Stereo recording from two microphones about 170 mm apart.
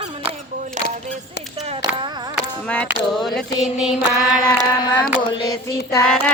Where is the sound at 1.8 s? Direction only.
25° right (ahead or behind).